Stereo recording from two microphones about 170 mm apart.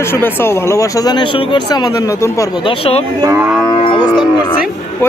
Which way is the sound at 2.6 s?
35° left (ahead or behind).